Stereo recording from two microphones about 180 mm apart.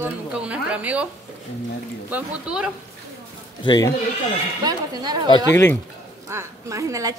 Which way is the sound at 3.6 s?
20° left (ahead or behind).